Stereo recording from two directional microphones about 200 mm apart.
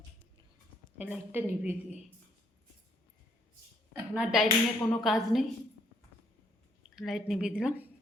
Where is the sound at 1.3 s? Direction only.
10° right (ahead or behind).